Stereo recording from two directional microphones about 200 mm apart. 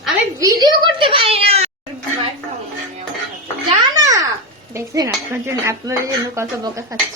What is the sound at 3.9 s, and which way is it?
Babbling, 15° right (ahead or behind).